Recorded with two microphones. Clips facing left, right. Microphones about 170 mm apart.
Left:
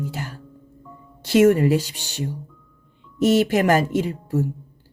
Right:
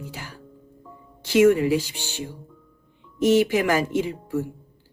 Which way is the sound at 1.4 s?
45° left (ahead or behind).